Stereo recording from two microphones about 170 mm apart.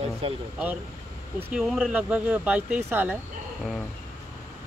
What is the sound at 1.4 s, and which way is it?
Speech, 5° right (ahead or behind).